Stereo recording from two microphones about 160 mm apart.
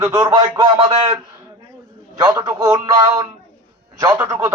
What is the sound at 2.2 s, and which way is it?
Speech, 25° right (ahead or behind).